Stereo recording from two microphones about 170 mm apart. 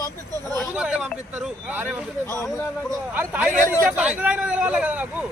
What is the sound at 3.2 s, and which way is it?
Speech, 10° right (ahead or behind).